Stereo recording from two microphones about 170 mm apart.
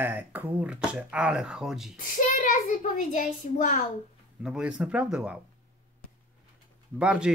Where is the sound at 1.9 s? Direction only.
50° left (ahead or behind).